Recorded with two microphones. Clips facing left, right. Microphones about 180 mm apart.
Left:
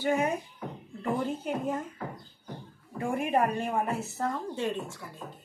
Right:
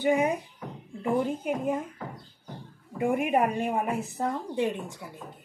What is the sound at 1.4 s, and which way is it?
Speech, 15° right (ahead or behind).